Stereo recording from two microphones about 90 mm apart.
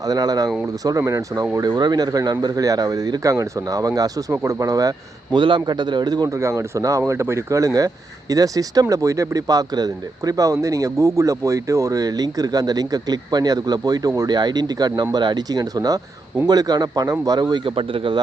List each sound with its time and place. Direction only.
0.0 s speech: 45° right (ahead or behind)
5.3 s a man's voice: 60° right (ahead or behind)
6.3 s speech: 30° right (ahead or behind); by 17.6 s 50° right (ahead or behind)
17.7 s speech: 75° right (ahead or behind)